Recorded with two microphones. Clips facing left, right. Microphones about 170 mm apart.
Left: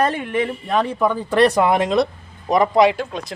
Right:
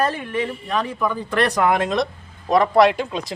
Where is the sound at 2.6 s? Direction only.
Centre (ahead or behind).